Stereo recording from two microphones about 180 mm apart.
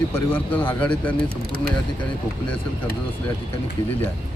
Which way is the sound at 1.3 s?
60° right (ahead or behind).